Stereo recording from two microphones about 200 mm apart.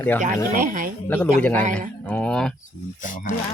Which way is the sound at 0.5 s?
45° right (ahead or behind).